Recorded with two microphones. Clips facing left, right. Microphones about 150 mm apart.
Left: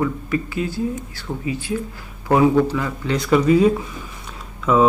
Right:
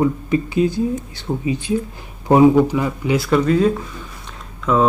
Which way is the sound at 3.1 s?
Centre (ahead or behind).